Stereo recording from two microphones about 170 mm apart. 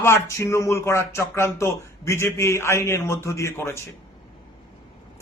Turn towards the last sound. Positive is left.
turn(degrees=15)  # may be behind; listen again after turning